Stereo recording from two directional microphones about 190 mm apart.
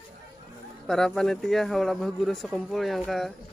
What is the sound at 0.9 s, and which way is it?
Speech, centre (ahead or behind).